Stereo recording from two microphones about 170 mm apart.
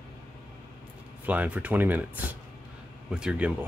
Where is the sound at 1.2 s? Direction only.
10° right (ahead or behind).